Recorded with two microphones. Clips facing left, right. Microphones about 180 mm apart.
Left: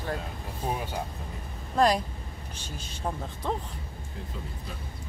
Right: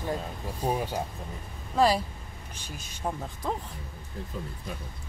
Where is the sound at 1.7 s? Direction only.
5° right (ahead or behind).